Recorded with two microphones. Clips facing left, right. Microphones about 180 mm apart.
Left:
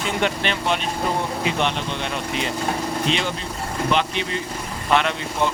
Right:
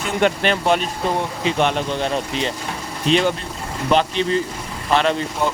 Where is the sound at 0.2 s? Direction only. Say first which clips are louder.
Right 8 dB; 45° right (ahead or behind).